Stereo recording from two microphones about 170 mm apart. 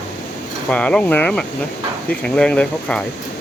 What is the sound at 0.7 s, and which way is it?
Speech, 5° left (ahead or behind).